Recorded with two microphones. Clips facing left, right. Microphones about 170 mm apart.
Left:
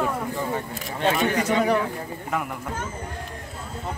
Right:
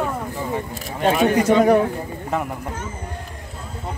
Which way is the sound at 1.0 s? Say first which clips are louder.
Right 5 dB; 45° right (ahead or behind).